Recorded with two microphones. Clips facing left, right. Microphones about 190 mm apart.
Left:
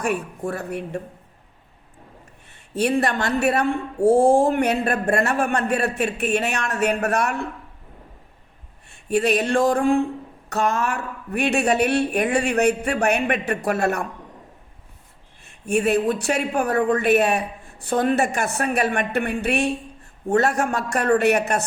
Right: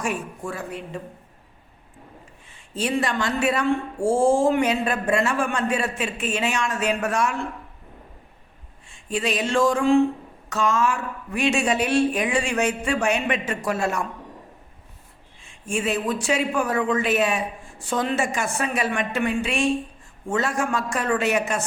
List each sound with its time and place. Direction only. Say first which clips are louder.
0.0 s speech: left 4 dB; 60° left (ahead or behind)
2.5 s speech: left 4 dB; 65° left (ahead or behind)
8.9 s speech: left 6 dB; 60° left (ahead or behind)
15.4 s a sound: left 5 dB; 65° left (ahead or behind)
16.0 s speech: left 1 dB; 60° left (ahead or behind)